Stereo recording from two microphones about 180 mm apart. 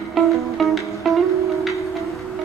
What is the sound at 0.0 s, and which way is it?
Music, centre (ahead or behind).